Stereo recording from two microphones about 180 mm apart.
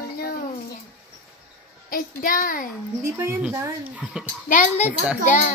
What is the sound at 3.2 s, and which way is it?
Speech, 10° right (ahead or behind).